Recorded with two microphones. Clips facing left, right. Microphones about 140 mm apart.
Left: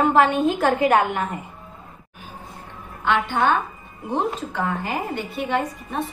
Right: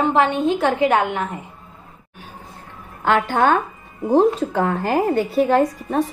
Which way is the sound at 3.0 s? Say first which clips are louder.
Right 4 dB; 45° right (ahead or behind).